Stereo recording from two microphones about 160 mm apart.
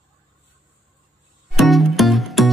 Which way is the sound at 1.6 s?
Centre (ahead or behind).